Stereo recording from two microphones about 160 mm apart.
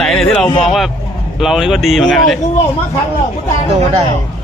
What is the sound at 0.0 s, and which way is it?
Speech, centre (ahead or behind).